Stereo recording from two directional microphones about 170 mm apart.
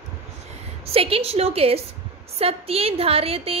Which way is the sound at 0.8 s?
35° right (ahead or behind).